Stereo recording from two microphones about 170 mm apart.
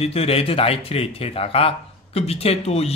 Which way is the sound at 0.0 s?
35° left (ahead or behind).